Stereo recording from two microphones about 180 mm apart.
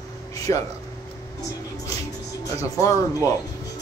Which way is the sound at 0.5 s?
20° left (ahead or behind).